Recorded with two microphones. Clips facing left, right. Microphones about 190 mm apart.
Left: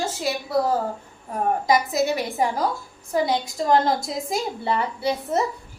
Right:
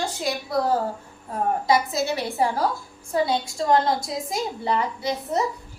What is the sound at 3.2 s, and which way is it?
Speech, 20° left (ahead or behind).